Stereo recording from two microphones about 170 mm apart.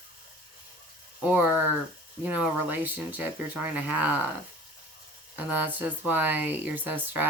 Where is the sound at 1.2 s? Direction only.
10° right (ahead or behind).